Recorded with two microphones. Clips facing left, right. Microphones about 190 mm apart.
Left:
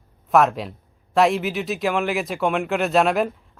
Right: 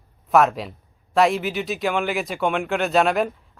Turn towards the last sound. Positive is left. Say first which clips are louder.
# even
turn(degrees=0)  # may be behind; listen again after turning